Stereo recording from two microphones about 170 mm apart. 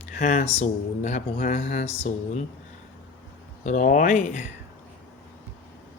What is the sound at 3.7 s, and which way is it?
Speech, 45° left (ahead or behind).